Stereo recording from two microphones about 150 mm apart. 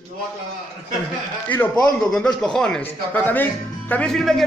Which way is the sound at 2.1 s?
5° left (ahead or behind).